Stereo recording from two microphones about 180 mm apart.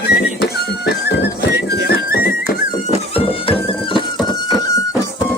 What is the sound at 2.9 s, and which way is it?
Music, 30° left (ahead or behind).